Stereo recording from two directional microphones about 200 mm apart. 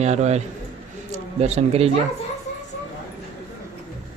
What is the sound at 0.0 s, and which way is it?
A man's voice, 35° right (ahead or behind).